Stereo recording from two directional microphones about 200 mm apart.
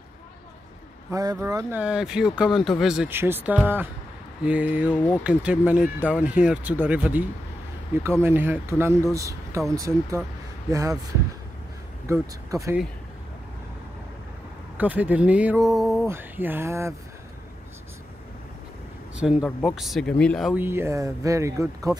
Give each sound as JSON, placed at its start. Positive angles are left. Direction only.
{"t": 1.1, "sound": "speech", "side_deg": -15}
{"t": 4.8, "sound": "speech", "side_deg": 10}
{"t": 5.2, "sound": "speech", "side_deg": -5}
{"t": 14.8, "sound": "speech", "side_deg": -10}
{"t": 15.7, "sound": "music", "side_deg": 0}
{"t": 16.1, "sound": "speech", "side_deg": -10}
{"t": 19.2, "sound": "speech", "side_deg": 0}
{"t": 20.5, "sound": "speech", "side_deg": -10}